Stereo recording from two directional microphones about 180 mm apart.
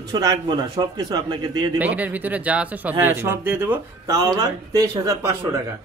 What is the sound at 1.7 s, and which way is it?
Speech, 10° right (ahead or behind).